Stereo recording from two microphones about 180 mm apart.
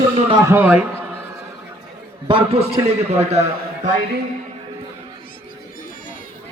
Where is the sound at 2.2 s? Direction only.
30° right (ahead or behind).